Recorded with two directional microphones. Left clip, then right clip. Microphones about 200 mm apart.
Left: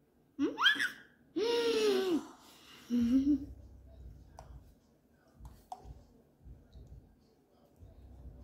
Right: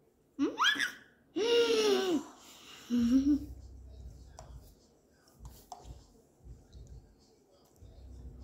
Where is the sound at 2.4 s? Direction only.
20° right (ahead or behind).